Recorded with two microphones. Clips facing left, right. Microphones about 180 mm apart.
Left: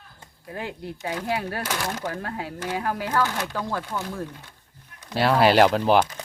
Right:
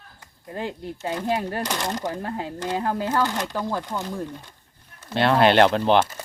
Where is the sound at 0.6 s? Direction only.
15° right (ahead or behind).